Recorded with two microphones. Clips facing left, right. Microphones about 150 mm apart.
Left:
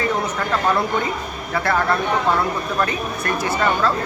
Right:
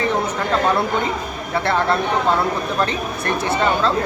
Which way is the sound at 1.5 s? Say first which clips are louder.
Right 1 dB; 25° right (ahead or behind).